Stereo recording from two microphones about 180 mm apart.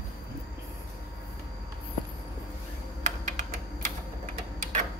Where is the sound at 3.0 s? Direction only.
40° right (ahead or behind).